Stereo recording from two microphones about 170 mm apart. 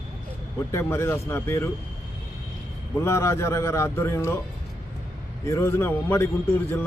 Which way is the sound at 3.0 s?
15° left (ahead or behind).